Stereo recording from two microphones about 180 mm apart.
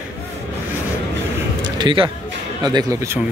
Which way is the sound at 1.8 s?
25° right (ahead or behind).